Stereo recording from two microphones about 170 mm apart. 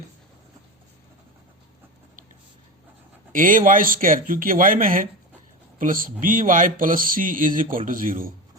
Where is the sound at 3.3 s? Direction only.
50° right (ahead or behind).